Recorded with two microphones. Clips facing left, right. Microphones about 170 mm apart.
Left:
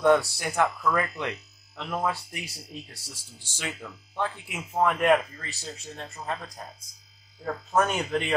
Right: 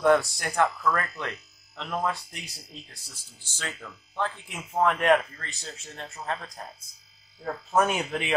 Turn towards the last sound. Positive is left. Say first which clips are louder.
# right 1 dB
turn(degrees=-10)  # may be behind; listen again after turning